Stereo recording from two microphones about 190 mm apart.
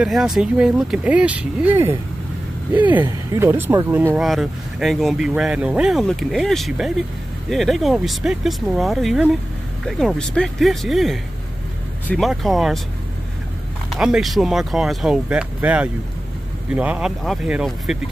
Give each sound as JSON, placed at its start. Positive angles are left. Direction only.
{"t": 0.0, "sound": "speech", "side_deg": 0}
{"t": 4.2, "sound": "speech", "side_deg": 0}
{"t": 13.9, "sound": "speech", "side_deg": -5}